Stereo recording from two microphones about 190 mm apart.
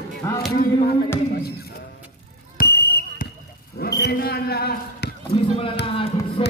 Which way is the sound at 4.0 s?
55° left (ahead or behind).